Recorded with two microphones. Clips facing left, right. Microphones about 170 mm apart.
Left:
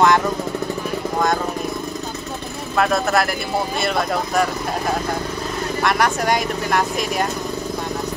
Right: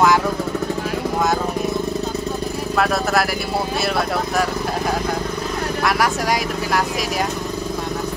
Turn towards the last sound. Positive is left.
turn(degrees=0)  # may be behind; listen again after turning